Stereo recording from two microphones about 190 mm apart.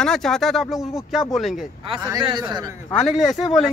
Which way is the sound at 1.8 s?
25° right (ahead or behind).